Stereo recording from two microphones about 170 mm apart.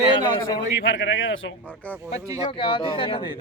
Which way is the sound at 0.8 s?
90° left.